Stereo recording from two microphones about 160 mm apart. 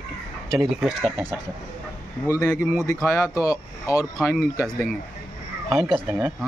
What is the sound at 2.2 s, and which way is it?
Speech, 20° left (ahead or behind).